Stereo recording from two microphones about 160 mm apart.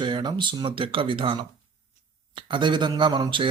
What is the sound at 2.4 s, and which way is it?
Speech, 30° right (ahead or behind).